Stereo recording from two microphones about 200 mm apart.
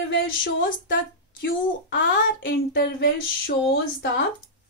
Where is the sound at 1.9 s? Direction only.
65° left (ahead or behind).